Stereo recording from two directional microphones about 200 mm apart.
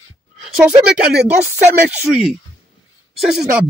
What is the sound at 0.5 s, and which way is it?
Speech, 5° right (ahead or behind).